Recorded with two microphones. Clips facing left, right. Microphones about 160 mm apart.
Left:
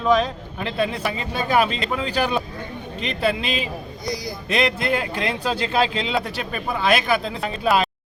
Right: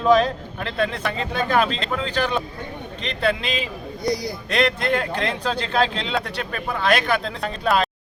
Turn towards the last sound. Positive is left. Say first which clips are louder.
# left 1 dB
turn(degrees=5)  # may be behind; listen again after turning